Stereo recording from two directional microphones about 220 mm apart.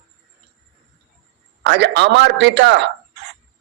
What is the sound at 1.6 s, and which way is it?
A man's voice, 50° right (ahead or behind).